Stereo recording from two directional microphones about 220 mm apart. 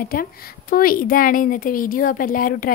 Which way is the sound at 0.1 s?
40° left (ahead or behind).